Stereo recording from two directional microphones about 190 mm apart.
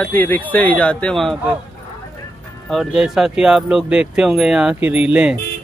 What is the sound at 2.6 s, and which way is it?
Speech, centre (ahead or behind).